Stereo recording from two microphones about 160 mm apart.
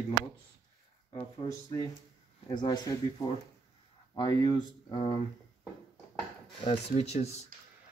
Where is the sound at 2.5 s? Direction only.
25° left (ahead or behind).